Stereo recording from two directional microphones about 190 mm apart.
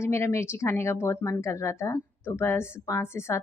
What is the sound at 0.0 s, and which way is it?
Speech, 15° left (ahead or behind).